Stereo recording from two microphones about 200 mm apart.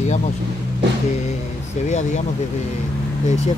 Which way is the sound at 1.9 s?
35° left (ahead or behind).